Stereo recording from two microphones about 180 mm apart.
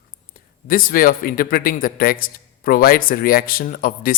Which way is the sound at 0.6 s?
55° left (ahead or behind).